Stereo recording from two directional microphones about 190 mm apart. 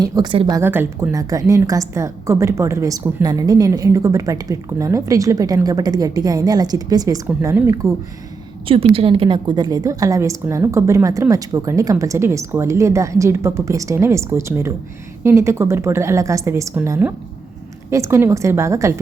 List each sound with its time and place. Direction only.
0.0 s a woman's voice: 20° right (ahead or behind)
0.5 s a woman's voice: 10° right (ahead or behind)
8.6 s a woman's voice: 30° right (ahead or behind)